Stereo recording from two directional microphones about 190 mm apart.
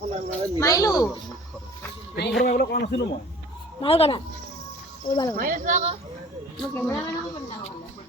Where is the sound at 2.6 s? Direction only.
55° left (ahead or behind).